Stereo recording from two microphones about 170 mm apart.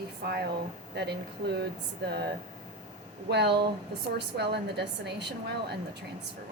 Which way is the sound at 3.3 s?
80° right.